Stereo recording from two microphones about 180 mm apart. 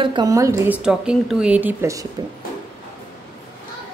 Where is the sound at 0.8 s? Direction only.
5° right (ahead or behind).